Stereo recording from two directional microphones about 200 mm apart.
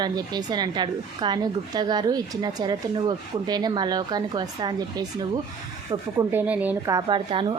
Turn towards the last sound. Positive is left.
turn(degrees=-25)  # may be behind; listen again after turning